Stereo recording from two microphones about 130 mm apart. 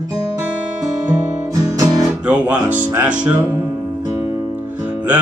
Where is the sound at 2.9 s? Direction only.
10° right (ahead or behind).